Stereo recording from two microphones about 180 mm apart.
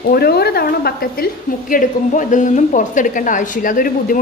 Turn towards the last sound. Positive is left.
turn(degrees=50)  # may be behind; listen again after turning